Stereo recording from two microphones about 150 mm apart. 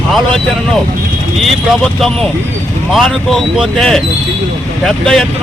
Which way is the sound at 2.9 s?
Centre (ahead or behind).